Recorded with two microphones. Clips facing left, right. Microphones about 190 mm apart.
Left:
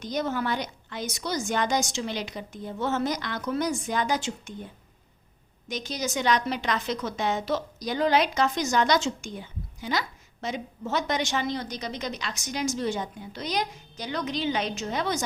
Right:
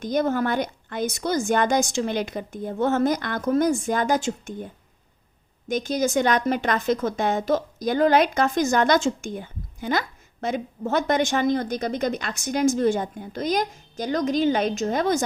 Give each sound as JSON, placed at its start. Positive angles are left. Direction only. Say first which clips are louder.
{"t": 0.0, "sound": "a woman's voice", "louder": "right 6 dB", "side_deg": -50}